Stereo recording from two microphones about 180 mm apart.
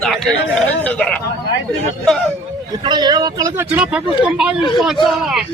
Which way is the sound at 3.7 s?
5° right (ahead or behind).